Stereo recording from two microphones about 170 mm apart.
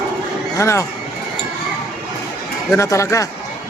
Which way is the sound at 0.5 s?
15° left (ahead or behind).